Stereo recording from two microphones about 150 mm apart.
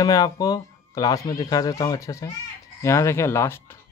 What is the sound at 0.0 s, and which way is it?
Speech, 25° left (ahead or behind).